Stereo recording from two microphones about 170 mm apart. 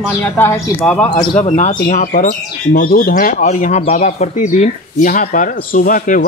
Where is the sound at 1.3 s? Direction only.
40° left (ahead or behind).